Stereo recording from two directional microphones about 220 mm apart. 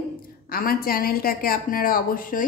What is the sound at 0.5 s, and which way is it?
A woman's voice, 40° left (ahead or behind).